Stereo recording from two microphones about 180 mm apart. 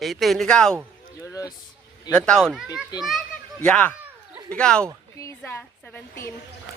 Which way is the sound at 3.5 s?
10° left (ahead or behind).